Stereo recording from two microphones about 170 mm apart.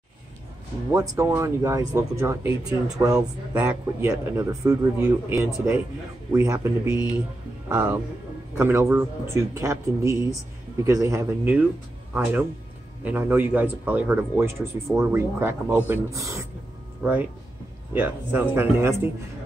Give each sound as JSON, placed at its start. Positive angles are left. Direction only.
{"t": 0.9, "sound": "a man's voice", "side_deg": -20}
{"t": 4.4, "sound": "a man's voice", "side_deg": -20}